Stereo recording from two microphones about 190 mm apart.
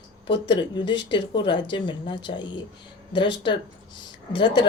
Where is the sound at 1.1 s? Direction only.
25° left (ahead or behind).